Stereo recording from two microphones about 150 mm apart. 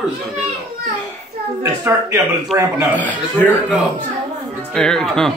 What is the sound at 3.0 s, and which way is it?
Speech, 10° left (ahead or behind).